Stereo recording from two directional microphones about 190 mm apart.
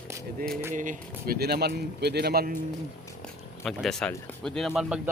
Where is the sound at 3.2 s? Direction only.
Centre (ahead or behind).